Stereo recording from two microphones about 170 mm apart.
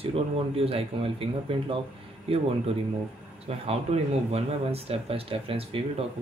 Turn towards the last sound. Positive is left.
turn(degrees=-35)  # may be behind; listen again after turning